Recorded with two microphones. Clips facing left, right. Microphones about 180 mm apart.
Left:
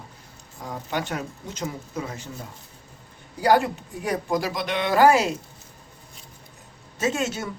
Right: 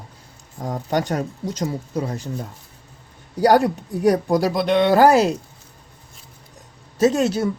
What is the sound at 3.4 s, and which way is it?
Speech, 40° right (ahead or behind).